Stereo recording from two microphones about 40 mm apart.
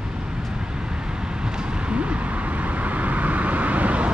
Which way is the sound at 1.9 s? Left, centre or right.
Right.